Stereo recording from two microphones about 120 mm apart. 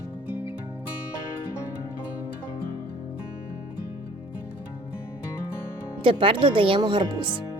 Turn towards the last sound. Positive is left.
turn(degrees=-45)  # may be behind; listen again after turning